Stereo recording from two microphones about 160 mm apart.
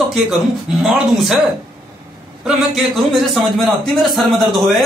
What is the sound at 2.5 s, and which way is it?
A man's voice, centre (ahead or behind).